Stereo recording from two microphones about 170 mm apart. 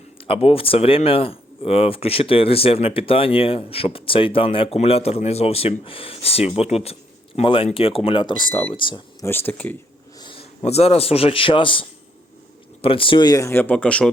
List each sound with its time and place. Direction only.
0.2 s speech: 35° left (ahead or behind)
9.2 s speech: 10° left (ahead or behind)
10.2 s a man's voice: 30° left (ahead or behind); by 14.1 s 5° left (ahead or behind)